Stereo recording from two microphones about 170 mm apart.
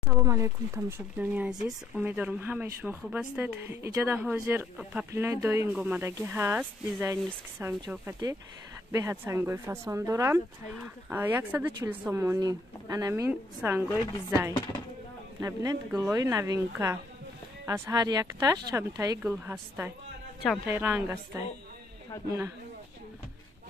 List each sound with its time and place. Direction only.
0.1 s speech: 15° right (ahead or behind)
15.4 s speech: 20° right (ahead or behind)
20.6 s speech: 15° right (ahead or behind)
22.1 s speech: 15° left (ahead or behind)